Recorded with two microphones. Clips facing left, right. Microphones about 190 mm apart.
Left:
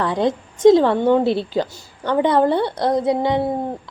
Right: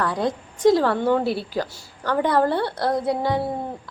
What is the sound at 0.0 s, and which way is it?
A woman's voice, 20° left (ahead or behind).